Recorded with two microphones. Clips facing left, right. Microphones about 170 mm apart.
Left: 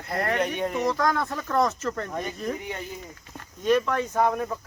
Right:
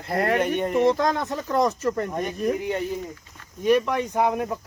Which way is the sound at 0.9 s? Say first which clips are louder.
Right 3 dB; 25° right (ahead or behind).